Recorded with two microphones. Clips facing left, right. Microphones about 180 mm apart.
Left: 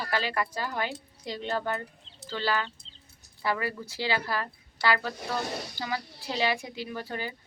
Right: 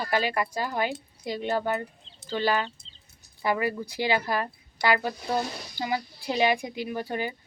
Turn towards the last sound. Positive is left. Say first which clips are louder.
# right 5 dB
turn(degrees=-15)  # may be behind; listen again after turning